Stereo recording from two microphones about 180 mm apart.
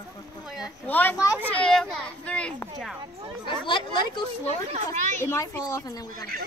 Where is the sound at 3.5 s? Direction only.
25° left (ahead or behind).